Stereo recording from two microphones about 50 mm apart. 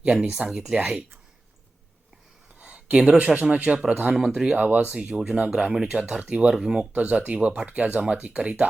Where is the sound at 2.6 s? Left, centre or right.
Right.